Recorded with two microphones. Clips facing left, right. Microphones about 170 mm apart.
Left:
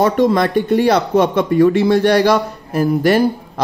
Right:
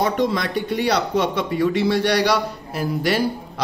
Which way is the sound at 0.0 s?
50° left (ahead or behind).